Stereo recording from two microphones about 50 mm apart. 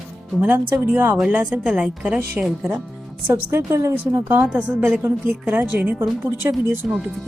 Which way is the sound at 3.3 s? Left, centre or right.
Right.